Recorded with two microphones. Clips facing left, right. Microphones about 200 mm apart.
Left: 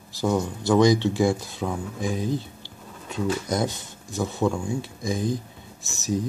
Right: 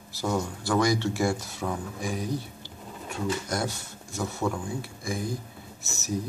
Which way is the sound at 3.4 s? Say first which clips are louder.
Left 5 dB; 20° left (ahead or behind).